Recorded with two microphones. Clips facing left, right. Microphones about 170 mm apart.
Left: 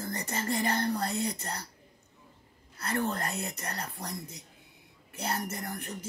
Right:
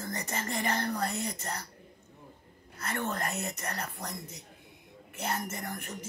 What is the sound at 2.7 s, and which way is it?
Speech, 35° left (ahead or behind).